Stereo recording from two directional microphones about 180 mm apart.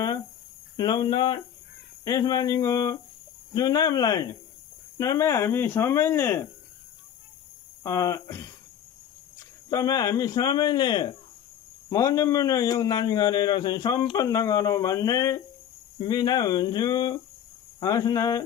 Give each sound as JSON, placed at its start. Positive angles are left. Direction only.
{"t": 0.7, "sound": "a man's voice", "side_deg": 25}
{"t": 7.8, "sound": "a man's voice", "side_deg": 20}
{"t": 9.7, "sound": "a man's voice", "side_deg": 20}